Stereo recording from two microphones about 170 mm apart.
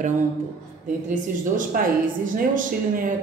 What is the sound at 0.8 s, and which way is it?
A woman's voice, 50° right (ahead or behind).